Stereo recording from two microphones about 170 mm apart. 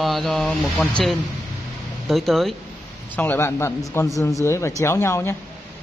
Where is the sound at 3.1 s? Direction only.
10° left (ahead or behind).